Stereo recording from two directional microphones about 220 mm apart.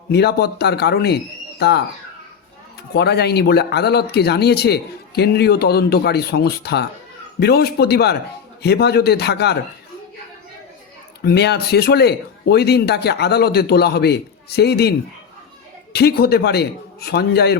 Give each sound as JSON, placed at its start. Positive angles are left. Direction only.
{"t": 0.1, "sound": "speech", "side_deg": 45}
{"t": 2.9, "sound": "speech", "side_deg": 50}
{"t": 11.2, "sound": "speech", "side_deg": 50}